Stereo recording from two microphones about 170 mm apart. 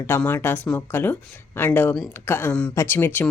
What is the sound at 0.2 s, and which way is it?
Speech, 10° left (ahead or behind).